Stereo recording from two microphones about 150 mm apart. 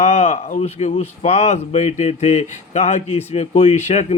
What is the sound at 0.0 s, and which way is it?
Speech, 50° left (ahead or behind).